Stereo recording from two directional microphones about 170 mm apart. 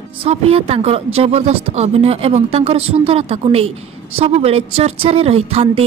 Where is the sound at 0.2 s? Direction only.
35° right (ahead or behind).